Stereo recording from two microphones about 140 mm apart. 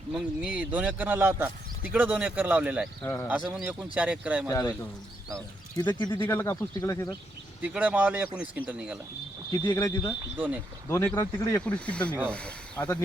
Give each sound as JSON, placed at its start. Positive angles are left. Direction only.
{"t": 0.1, "sound": "speech", "side_deg": -10}
{"t": 3.0, "sound": "speech", "side_deg": 15}
{"t": 3.5, "sound": "speech", "side_deg": -10}
{"t": 5.7, "sound": "speech", "side_deg": 30}
{"t": 6.2, "sound": "speech", "side_deg": 20}
{"t": 7.6, "sound": "speech", "side_deg": -10}
{"t": 9.6, "sound": "speech", "side_deg": 20}
{"t": 10.3, "sound": "speech", "side_deg": -10}
{"t": 10.8, "sound": "speech", "side_deg": 15}